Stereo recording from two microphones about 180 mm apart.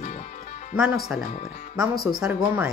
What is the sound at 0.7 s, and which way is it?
Speech, centre (ahead or behind).